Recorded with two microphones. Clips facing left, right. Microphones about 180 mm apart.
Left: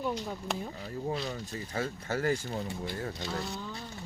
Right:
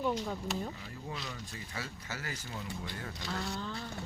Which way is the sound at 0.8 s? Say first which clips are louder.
Left 9 dB; 40° left (ahead or behind).